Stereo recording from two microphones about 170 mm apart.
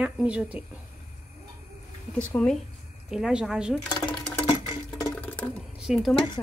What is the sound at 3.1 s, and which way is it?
Speech, 5° right (ahead or behind).